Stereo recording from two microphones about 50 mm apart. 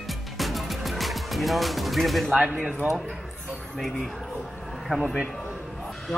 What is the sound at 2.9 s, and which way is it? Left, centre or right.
Speech, centre.